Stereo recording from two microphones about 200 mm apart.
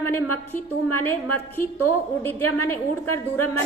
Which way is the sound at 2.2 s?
10° left (ahead or behind).